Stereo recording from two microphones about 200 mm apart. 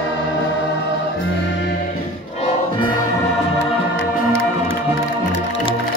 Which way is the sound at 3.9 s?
75° left (ahead or behind).